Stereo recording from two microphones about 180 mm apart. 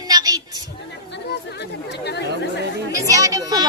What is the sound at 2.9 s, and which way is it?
Chatter, 20° right (ahead or behind).